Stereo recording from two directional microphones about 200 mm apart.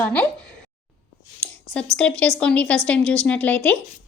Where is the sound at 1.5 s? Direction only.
5° left (ahead or behind).